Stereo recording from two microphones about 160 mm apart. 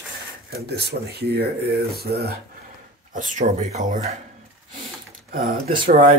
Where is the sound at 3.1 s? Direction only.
55° right (ahead or behind).